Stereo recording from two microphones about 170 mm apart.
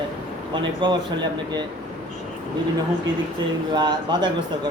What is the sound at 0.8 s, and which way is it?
Speech, 25° right (ahead or behind).